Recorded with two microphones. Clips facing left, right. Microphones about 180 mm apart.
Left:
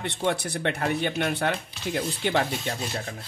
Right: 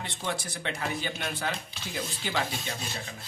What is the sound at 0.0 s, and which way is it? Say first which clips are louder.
Speech: left 7 dB; 65° left (ahead or behind).